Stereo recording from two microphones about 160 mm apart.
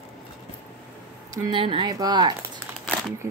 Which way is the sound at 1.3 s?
30° right (ahead or behind).